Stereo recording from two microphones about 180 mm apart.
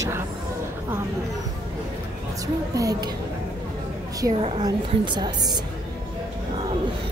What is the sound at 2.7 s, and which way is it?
Speech, 20° right (ahead or behind).